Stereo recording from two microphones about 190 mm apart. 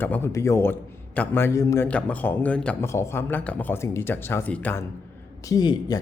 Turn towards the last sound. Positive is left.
turn(degrees=20)  # may be behind; listen again after turning